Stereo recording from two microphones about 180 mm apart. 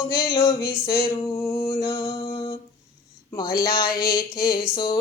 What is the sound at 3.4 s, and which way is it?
Music, 55° left (ahead or behind).